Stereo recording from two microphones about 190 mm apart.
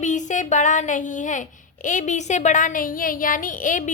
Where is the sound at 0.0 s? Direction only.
40° left (ahead or behind).